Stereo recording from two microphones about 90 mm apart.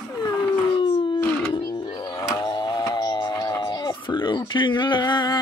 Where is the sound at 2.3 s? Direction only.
55° left (ahead or behind).